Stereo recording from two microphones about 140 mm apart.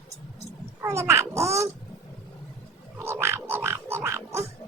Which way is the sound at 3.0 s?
20° right (ahead or behind).